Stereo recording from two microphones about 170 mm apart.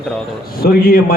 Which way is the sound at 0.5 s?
60° left (ahead or behind).